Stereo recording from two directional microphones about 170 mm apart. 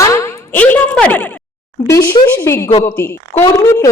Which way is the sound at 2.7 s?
35° left (ahead or behind).